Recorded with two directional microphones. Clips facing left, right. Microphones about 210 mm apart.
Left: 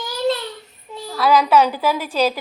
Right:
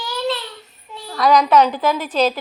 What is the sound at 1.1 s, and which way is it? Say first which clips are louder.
A woman's voice: right 1 dB; 5° left (ahead or behind).